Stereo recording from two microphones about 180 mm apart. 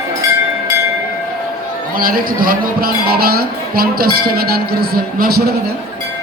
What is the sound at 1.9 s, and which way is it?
Speech, 55° right (ahead or behind).